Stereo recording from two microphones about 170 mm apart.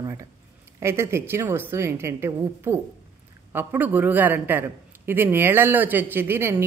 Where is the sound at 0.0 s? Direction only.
20° right (ahead or behind).